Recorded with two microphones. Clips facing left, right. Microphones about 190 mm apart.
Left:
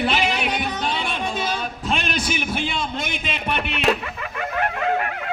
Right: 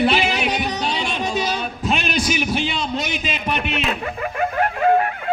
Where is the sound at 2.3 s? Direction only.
55° left (ahead or behind).